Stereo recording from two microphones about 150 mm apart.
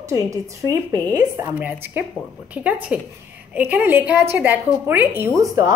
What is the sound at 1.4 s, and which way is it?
A woman's voice, 10° right (ahead or behind).